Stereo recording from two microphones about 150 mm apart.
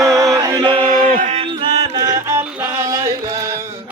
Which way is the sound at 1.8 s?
25° right (ahead or behind).